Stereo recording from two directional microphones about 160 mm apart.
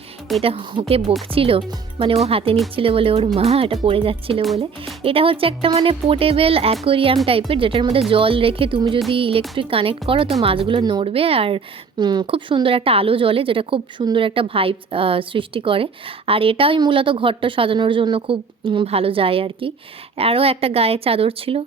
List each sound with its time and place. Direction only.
0.4 s a woman's voice: 30° right (ahead or behind)